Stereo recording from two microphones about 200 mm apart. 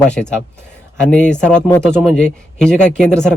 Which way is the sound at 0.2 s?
Centre (ahead or behind).